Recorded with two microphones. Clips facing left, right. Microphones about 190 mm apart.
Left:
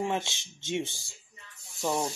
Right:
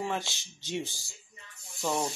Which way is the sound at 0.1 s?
20° left (ahead or behind).